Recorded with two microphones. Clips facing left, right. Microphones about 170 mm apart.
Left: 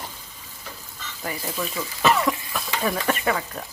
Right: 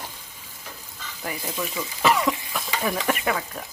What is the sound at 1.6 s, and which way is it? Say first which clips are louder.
A woman's voice: even; 15° right (ahead or behind).